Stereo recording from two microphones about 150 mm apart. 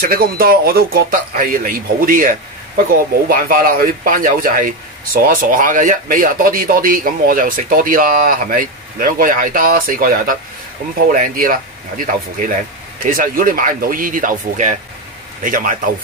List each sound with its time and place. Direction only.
0.0 s a man's voice: 80° right; by 15.7 s 65° right (ahead or behind)